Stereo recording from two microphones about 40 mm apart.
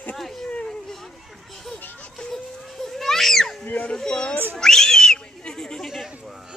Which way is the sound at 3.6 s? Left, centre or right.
Left.